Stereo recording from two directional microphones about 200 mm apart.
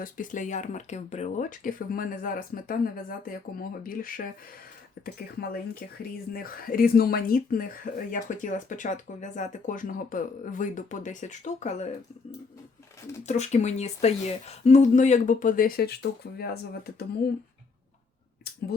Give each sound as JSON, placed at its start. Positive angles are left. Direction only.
{"t": 0.0, "sound": "speech", "side_deg": 40}
{"t": 13.2, "sound": "speech", "side_deg": 35}